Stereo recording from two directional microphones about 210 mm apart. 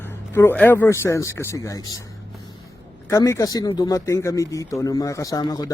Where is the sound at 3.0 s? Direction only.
15° left (ahead or behind).